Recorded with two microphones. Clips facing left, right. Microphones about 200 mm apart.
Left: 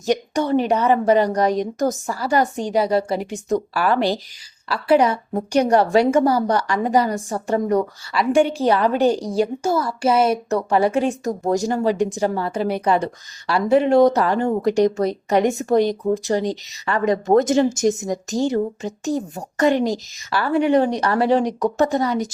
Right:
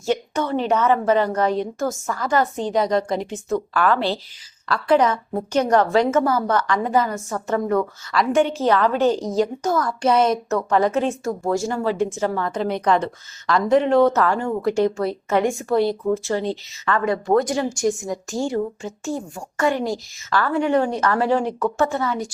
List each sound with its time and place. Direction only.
0.0 s a woman's voice: 15° left (ahead or behind)